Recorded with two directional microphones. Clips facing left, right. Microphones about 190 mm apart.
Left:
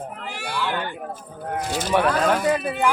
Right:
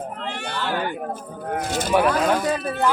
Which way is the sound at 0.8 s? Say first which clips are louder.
Right 4 dB; 45° right (ahead or behind).